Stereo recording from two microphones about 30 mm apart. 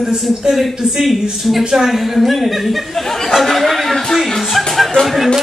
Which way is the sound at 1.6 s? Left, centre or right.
Right.